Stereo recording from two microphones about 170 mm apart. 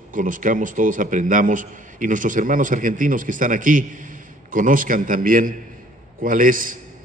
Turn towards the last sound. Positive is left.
turn(degrees=-55)  # may be behind; listen again after turning